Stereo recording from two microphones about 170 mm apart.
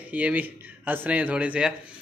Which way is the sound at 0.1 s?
10° right (ahead or behind).